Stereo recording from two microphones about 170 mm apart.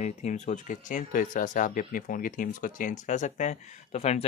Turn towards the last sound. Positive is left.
turn(degrees=40)  # may be behind; listen again after turning